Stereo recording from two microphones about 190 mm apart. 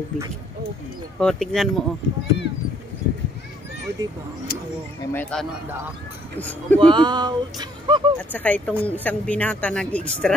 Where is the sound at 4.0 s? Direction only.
20° right (ahead or behind).